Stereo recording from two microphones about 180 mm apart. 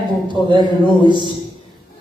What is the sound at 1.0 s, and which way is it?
Speech, 25° right (ahead or behind).